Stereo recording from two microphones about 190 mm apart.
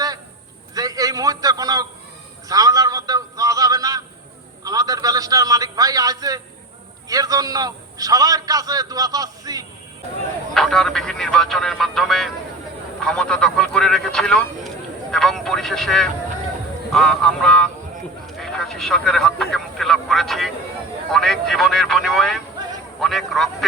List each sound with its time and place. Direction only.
0.7 s a sound: 20° right (ahead or behind)
4.6 s a man's voice: 20° right (ahead or behind)
10.5 s speech: centre (ahead or behind)
18.3 s vehicle: centre (ahead or behind)
21.1 s a man's voice: centre (ahead or behind)